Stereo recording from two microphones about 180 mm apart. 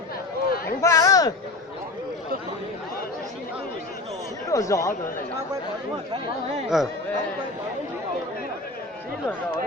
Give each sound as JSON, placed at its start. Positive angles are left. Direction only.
{"t": 0.8, "sound": "a sound", "side_deg": 15}
{"t": 4.5, "sound": "speech", "side_deg": 15}
{"t": 6.7, "sound": "speech", "side_deg": 0}